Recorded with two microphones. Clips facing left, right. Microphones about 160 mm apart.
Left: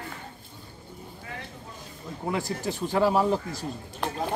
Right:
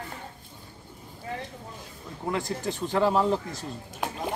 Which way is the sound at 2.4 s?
20° right (ahead or behind).